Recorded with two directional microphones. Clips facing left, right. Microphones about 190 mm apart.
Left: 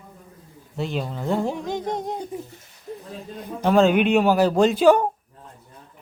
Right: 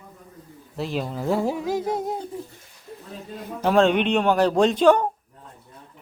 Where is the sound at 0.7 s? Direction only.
Centre (ahead or behind).